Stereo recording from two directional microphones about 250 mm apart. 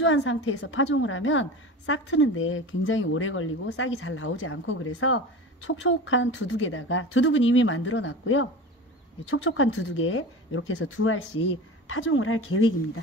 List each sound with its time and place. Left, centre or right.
0.0 s a woman's voice: left